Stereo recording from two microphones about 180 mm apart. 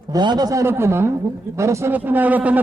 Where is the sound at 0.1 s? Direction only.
25° right (ahead or behind).